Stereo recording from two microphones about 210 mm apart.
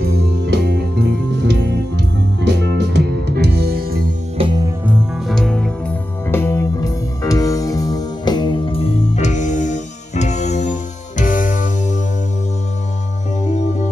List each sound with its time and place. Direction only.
0.0 s music: 50° right (ahead or behind)
4.4 s music: 20° right (ahead or behind); by 12.0 s 40° left (ahead or behind)
13.4 s music: 35° left (ahead or behind)